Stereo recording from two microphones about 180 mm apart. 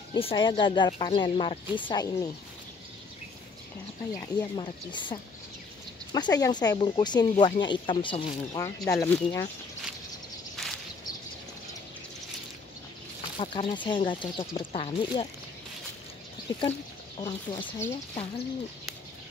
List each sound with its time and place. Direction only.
0.1 s speech: 30° left (ahead or behind)
4.1 s speech: 25° left (ahead or behind)
10.5 s a sound: centre (ahead or behind)
13.4 s speech: 30° left (ahead or behind)
17.2 s speech: 25° left (ahead or behind)
17.6 s speech: 15° left (ahead or behind)